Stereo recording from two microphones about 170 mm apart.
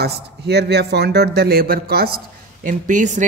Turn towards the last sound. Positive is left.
turn(degrees=-50)  # may be behind; listen again after turning